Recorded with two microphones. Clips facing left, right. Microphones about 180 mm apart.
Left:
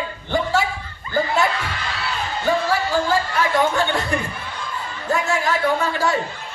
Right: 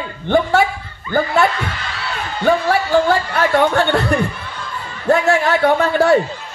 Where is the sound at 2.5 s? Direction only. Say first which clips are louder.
Right 5 dB; 65° right (ahead or behind).